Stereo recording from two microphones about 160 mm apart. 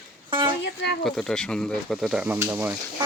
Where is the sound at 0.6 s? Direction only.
90° left.